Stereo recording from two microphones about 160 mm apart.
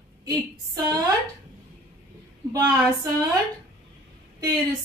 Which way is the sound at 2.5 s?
20° right (ahead or behind).